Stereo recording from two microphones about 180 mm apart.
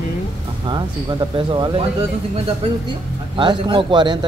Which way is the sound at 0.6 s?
25° right (ahead or behind).